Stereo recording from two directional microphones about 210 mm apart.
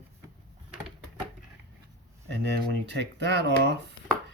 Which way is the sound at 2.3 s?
55° right (ahead or behind).